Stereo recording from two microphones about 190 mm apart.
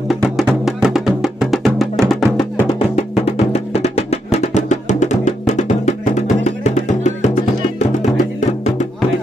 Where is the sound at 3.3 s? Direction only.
35° left (ahead or behind).